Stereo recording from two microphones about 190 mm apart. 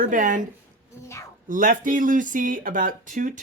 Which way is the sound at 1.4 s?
45° right (ahead or behind).